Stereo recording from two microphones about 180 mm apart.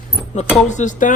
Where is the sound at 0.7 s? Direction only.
45° left (ahead or behind).